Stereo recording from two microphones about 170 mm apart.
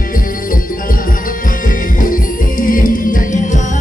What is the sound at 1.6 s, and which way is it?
Music, 55° left (ahead or behind).